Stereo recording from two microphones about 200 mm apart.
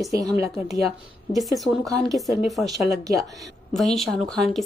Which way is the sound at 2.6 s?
5° right (ahead or behind).